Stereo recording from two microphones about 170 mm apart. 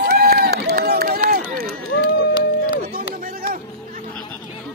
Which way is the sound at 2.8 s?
55° right (ahead or behind).